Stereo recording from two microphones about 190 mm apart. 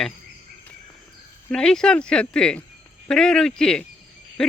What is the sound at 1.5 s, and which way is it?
Speech, 5° left (ahead or behind).